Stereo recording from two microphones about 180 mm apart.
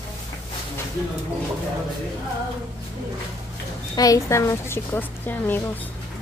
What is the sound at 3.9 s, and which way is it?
A woman's voice, 20° left (ahead or behind).